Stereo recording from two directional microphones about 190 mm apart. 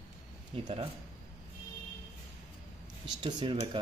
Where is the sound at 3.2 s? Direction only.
25° right (ahead or behind).